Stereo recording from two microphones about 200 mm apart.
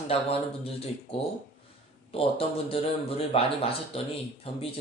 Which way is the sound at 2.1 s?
30° left (ahead or behind).